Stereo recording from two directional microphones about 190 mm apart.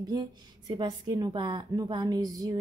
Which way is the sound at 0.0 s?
20° right (ahead or behind).